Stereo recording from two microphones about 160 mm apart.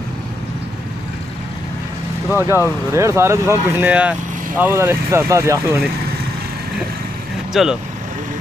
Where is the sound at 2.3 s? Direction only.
15° right (ahead or behind).